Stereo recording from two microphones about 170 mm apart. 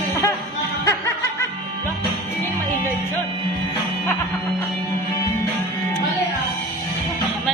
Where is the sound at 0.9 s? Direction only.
15° left (ahead or behind).